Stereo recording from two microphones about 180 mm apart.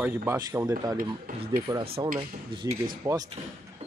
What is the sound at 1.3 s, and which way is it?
Speech, 50° right (ahead or behind).